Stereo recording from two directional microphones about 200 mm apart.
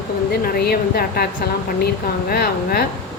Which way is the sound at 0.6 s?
50° left (ahead or behind).